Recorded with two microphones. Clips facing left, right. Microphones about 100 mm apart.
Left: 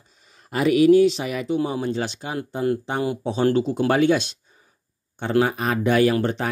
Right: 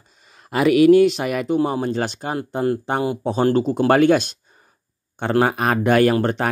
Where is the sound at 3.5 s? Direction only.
50° right (ahead or behind).